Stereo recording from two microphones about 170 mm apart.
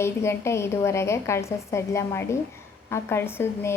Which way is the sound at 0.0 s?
15° left (ahead or behind).